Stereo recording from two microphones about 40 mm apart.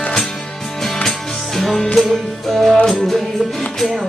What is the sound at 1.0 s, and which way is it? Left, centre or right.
Music, centre.